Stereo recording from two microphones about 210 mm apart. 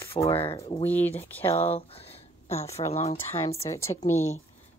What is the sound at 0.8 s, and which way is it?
Speech, 10° left (ahead or behind).